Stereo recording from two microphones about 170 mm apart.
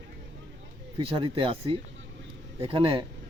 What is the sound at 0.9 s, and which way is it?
Speech, 30° right (ahead or behind).